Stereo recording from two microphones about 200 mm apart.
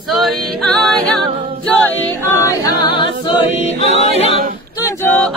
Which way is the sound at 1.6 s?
10° left (ahead or behind).